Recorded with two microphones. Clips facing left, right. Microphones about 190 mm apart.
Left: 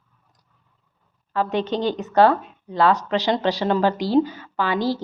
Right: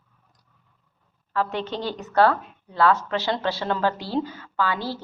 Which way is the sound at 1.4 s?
15° left (ahead or behind).